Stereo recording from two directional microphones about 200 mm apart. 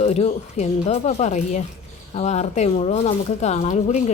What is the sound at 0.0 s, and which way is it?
Speech, 30° left (ahead or behind).